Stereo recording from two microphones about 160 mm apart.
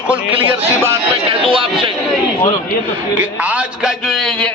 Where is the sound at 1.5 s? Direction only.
30° right (ahead or behind).